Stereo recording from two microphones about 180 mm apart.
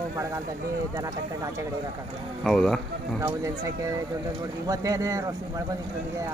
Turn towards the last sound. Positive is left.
turn(degrees=-15)  # may be behind; listen again after turning